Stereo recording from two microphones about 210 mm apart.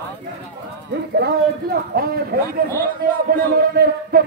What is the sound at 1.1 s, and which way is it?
Speech, 50° right (ahead or behind).